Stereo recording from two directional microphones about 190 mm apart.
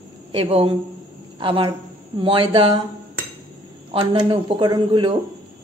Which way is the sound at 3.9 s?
25° right (ahead or behind).